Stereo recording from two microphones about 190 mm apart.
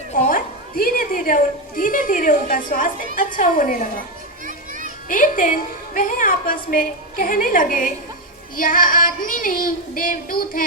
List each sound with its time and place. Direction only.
0.1 s a woman's voice: 40° left (ahead or behind)
4.4 s children playing: 45° right (ahead or behind)
5.0 s a woman's voice: 45° left (ahead or behind)